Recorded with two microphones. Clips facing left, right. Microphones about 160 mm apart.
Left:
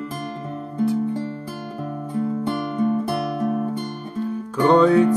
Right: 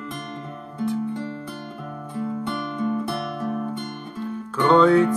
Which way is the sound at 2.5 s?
45° left (ahead or behind).